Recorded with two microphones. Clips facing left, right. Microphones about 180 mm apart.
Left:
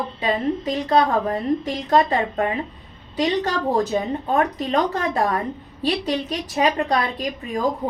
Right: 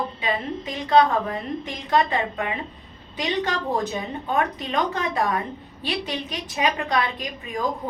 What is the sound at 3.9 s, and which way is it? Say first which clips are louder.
A woman's voice: left 4 dB; 40° left (ahead or behind).